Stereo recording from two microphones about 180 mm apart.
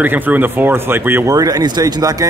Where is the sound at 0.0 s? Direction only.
10° right (ahead or behind).